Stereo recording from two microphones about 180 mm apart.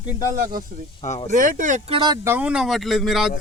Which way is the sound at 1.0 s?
35° left (ahead or behind).